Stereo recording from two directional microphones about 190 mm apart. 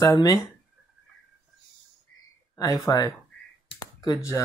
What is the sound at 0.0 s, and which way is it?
Speech, 20° left (ahead or behind).